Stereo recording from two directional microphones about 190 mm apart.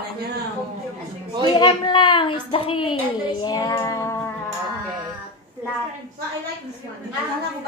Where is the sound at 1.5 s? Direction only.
25° left (ahead or behind).